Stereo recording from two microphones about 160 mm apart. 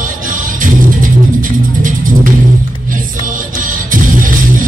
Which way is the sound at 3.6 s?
55° right (ahead or behind).